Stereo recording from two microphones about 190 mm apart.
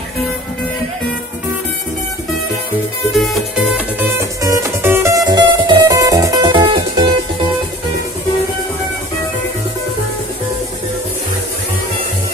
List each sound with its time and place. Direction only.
3.1 s music: centre (ahead or behind); by 7.2 s 25° right (ahead or behind)